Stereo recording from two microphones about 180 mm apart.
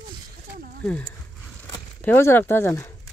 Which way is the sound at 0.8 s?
10° left (ahead or behind).